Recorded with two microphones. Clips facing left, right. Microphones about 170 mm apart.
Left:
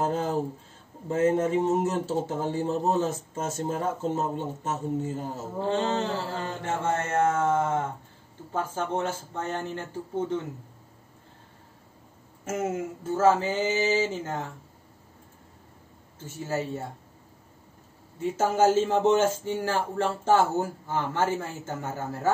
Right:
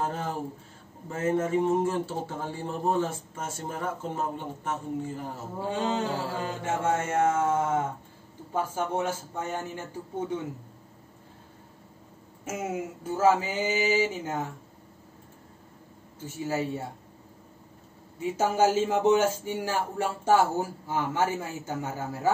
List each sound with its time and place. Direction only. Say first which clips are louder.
0.0 s speech: left 5 dB; 25° left (ahead or behind)
5.6 s speech: left 2 dB; 10° right (ahead or behind)
12.4 s speech: left 3 dB; 10° right (ahead or behind)
16.3 s speech: right 1 dB; 15° right (ahead or behind)
18.7 s speech: left 1 dB; 10° right (ahead or behind)